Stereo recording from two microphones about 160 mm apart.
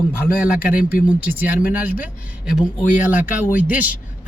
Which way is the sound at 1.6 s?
60° left (ahead or behind).